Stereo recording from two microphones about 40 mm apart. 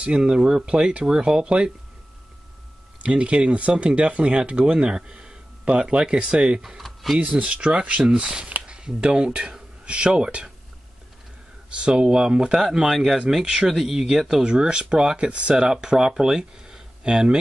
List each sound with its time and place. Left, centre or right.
0.0 s speech: right
3.0 s speech: right
6.8 s a sound: centre
7.2 s speech: right
8.0 s speech: right
11.7 s speech: right
12.6 s speech: centre
14.4 s speech: right